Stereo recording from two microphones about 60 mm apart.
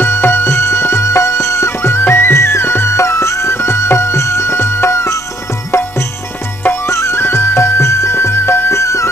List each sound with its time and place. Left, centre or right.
0.0 s music: left